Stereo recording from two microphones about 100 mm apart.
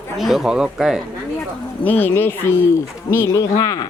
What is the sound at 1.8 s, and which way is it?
Speech, 20° left (ahead or behind).